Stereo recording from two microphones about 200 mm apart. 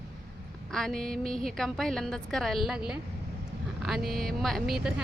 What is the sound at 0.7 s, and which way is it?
Speech, centre (ahead or behind).